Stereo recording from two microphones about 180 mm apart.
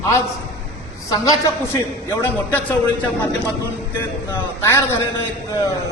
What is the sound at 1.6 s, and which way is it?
A man's voice, 10° left (ahead or behind).